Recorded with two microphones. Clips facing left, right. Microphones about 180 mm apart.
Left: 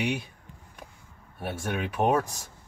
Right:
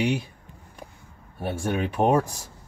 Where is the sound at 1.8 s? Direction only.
30° right (ahead or behind).